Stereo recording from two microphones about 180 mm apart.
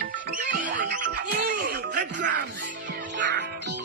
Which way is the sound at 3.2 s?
70° right (ahead or behind).